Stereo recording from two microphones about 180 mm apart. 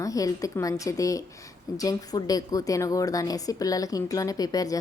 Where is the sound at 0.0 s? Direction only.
20° left (ahead or behind).